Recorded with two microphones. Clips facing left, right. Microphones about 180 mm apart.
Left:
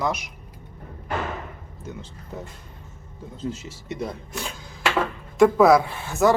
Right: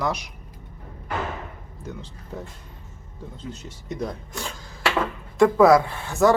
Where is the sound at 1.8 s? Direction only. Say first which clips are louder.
Even; centre (ahead or behind).